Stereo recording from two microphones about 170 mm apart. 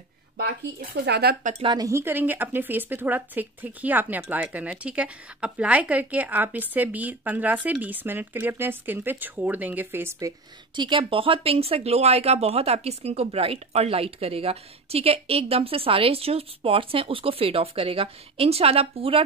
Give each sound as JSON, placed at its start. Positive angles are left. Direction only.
{"t": 0.4, "sound": "speech", "side_deg": -80}
{"t": 1.4, "sound": "speech", "side_deg": -40}
{"t": 1.7, "sound": "speech", "side_deg": -20}
{"t": 10.8, "sound": "speech", "side_deg": -30}